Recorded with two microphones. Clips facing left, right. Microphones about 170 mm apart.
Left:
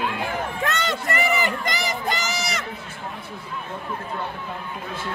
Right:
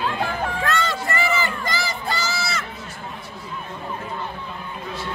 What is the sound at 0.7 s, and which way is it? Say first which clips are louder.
Crowd: right 1 dB; 20° left (ahead or behind).